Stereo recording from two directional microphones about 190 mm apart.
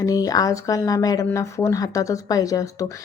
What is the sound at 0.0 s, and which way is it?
Speech, 20° left (ahead or behind).